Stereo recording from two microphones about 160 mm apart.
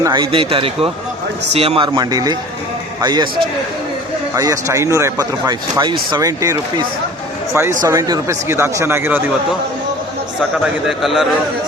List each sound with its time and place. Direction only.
0.0 s speech: 25° right (ahead or behind)
2.0 s speech: 25° right (ahead or behind)
4.4 s speech: 20° right (ahead or behind)
10.8 s a man's voice: centre (ahead or behind)